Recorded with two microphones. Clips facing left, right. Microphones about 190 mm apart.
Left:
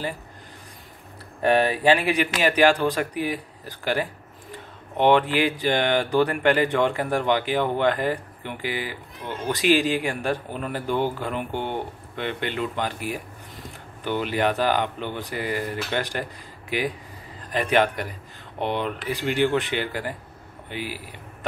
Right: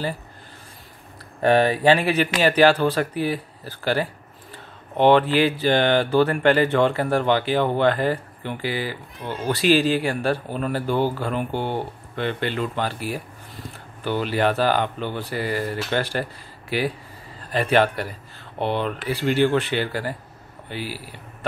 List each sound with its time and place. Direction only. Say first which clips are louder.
1.4 s speech: right 2 dB; 10° left (ahead or behind)
14.2 s a man's voice: right 2 dB; 15° left (ahead or behind)